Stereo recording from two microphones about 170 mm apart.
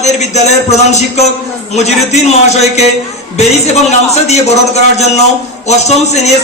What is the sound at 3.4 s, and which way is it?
A man's voice, 40° left (ahead or behind).